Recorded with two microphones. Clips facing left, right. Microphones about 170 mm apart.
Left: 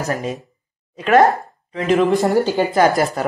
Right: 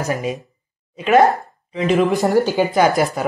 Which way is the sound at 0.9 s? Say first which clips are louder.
Even; 5° right (ahead or behind).